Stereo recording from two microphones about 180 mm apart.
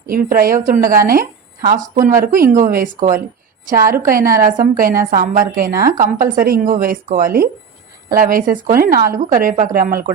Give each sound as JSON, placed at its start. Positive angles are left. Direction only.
{"t": 0.1, "sound": "a woman's voice", "side_deg": -50}